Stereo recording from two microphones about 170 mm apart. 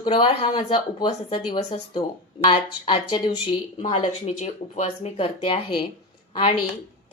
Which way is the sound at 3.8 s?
40° left (ahead or behind).